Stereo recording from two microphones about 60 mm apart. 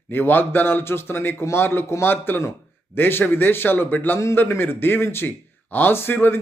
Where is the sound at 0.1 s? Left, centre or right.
Left.